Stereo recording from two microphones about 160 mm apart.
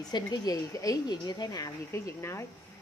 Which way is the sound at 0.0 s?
25° left (ahead or behind).